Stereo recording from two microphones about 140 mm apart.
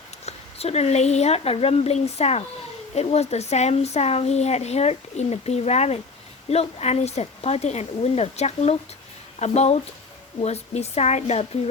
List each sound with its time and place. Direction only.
0.3 s speech: 50° left (ahead or behind)